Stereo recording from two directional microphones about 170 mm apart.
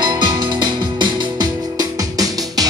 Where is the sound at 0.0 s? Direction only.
25° right (ahead or behind).